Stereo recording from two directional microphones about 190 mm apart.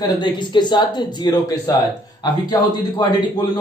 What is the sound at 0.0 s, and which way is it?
A man's voice, 20° left (ahead or behind).